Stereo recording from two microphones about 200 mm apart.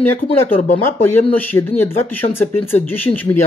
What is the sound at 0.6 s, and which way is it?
Speech, 40° left (ahead or behind).